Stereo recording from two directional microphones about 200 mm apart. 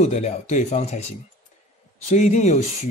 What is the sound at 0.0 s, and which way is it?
Speech, 35° left (ahead or behind).